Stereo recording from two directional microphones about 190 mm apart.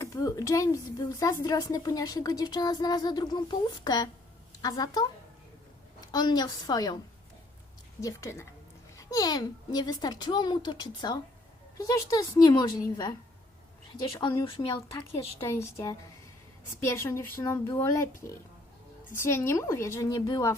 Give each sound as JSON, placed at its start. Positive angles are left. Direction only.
{"t": 0.0, "sound": "speech", "side_deg": 15}
{"t": 6.1, "sound": "speech", "side_deg": 20}
{"t": 8.0, "sound": "a woman's voice", "side_deg": 15}
{"t": 15.1, "sound": "a woman's voice", "side_deg": 15}
{"t": 19.1, "sound": "a woman's voice", "side_deg": 15}